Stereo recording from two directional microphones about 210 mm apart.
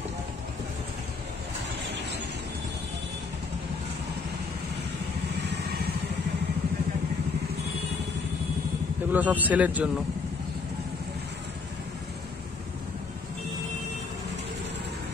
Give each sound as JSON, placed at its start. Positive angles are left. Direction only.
{"t": 5.5, "sound": "vehicle", "side_deg": -50}
{"t": 9.1, "sound": "speech", "side_deg": -10}